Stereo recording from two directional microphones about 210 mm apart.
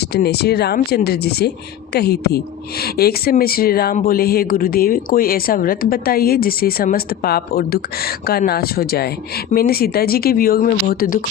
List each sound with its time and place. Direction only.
0.1 s a woman's voice: 50° left (ahead or behind)